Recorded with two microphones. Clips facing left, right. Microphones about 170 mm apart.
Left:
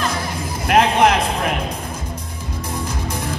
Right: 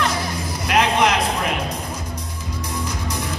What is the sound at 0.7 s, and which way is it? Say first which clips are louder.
Music: left 4 dB; 50° left (ahead or behind).